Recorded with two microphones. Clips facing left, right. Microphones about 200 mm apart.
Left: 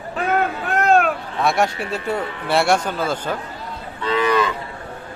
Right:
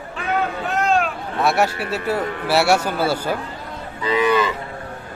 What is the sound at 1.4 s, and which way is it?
Speech, 5° right (ahead or behind).